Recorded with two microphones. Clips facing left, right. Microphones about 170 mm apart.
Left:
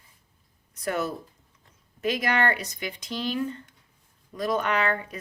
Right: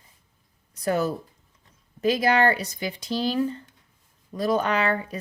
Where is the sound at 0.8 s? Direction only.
35° right (ahead or behind).